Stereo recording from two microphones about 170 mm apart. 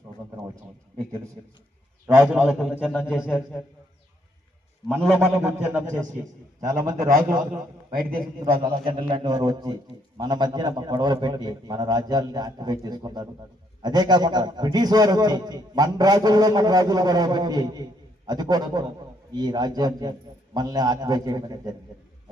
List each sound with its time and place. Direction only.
2.1 s a man's voice: 5° right (ahead or behind)
4.9 s a man's voice: centre (ahead or behind)
5.4 s a man's voice: 10° right (ahead or behind)
6.8 s a man's voice: 20° right (ahead or behind)